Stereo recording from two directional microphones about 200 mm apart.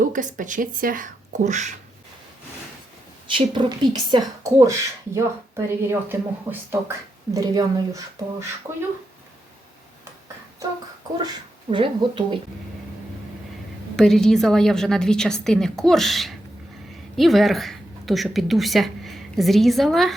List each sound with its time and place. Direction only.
0.0 s speech: 40° right (ahead or behind)
3.3 s speech: 25° right (ahead or behind)
11.7 s speech: 25° right (ahead or behind)
13.9 s a woman's voice: 5° left (ahead or behind)